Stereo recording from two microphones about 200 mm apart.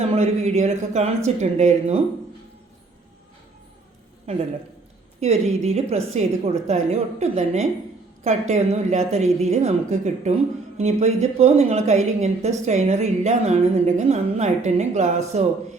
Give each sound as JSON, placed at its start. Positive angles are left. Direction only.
{"t": 0.0, "sound": "a woman's voice", "side_deg": -30}
{"t": 4.3, "sound": "a woman's voice", "side_deg": -30}